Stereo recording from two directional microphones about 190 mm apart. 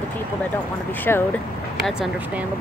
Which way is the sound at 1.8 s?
Centre (ahead or behind).